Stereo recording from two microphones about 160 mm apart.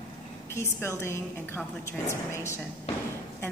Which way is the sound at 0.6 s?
15° left (ahead or behind).